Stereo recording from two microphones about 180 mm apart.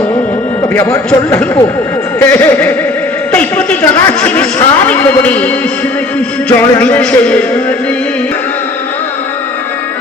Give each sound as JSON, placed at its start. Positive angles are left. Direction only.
{"t": 0.7, "sound": "a man's voice", "side_deg": 15}
{"t": 3.3, "sound": "a sound", "side_deg": 10}
{"t": 6.1, "sound": "a man's voice", "side_deg": 10}